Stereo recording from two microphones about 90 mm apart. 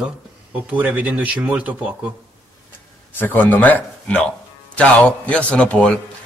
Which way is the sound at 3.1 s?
20° left (ahead or behind).